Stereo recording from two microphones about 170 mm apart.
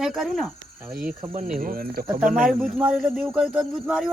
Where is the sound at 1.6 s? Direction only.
55° right (ahead or behind).